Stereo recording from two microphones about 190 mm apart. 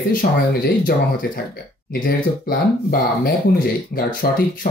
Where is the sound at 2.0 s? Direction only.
50° left (ahead or behind).